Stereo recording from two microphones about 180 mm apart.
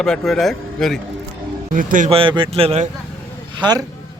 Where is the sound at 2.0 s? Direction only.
30° right (ahead or behind).